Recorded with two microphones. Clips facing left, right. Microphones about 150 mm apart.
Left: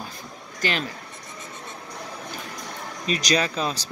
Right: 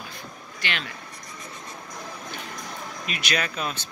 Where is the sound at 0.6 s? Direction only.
40° left (ahead or behind).